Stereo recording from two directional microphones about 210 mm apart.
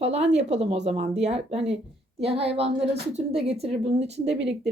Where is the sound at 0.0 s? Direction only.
30° right (ahead or behind).